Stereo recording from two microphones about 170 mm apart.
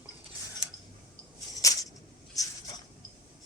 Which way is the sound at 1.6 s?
20° left (ahead or behind).